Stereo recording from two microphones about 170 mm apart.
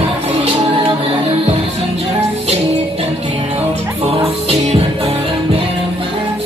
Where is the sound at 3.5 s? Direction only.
35° right (ahead or behind).